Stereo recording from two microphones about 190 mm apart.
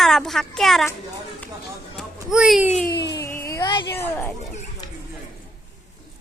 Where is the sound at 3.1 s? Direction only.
15° left (ahead or behind).